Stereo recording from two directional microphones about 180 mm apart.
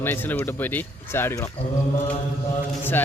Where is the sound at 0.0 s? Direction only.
10° left (ahead or behind).